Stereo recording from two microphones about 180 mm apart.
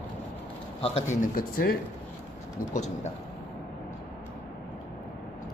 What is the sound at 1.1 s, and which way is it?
Speech, 50° left (ahead or behind).